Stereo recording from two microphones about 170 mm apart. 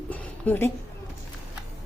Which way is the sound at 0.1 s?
10° left (ahead or behind).